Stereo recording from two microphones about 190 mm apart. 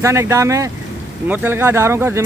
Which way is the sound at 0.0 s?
15° right (ahead or behind).